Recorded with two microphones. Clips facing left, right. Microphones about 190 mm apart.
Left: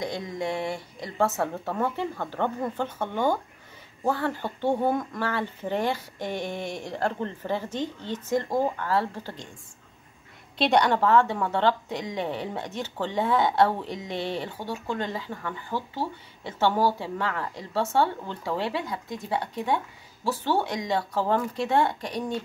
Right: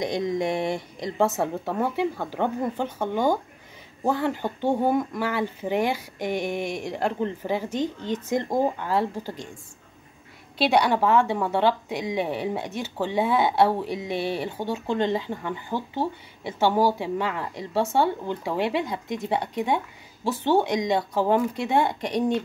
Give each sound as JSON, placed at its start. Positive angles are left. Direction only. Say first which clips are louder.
{"t": 0.0, "sound": "speech", "louder": "right 5 dB", "side_deg": -15}
{"t": 10.6, "sound": "speech", "louder": "right 1 dB", "side_deg": -5}
{"t": 14.6, "sound": "speech", "louder": "right 5 dB", "side_deg": -25}